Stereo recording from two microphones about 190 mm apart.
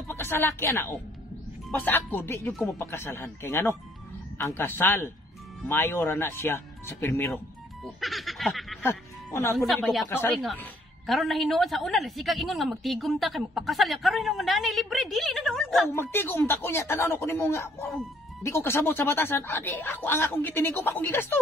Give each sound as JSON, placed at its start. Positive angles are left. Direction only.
{"t": 0.1, "sound": "speech", "side_deg": 10}
{"t": 7.8, "sound": "a sound", "side_deg": 0}
{"t": 8.8, "sound": "speech", "side_deg": 15}
{"t": 9.8, "sound": "a woman's voice", "side_deg": 0}
{"t": 10.0, "sound": "a woman's voice", "side_deg": 15}
{"t": 15.9, "sound": "speech", "side_deg": 10}